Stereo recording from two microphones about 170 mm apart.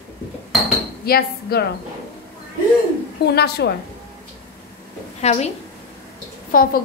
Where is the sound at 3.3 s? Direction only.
70° left (ahead or behind).